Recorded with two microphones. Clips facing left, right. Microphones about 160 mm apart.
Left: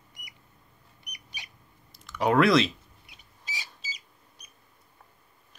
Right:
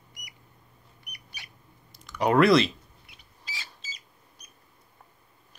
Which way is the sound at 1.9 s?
Centre (ahead or behind).